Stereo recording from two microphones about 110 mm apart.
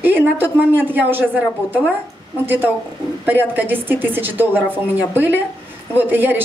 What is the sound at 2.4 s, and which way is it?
A woman's voice, 20° right (ahead or behind).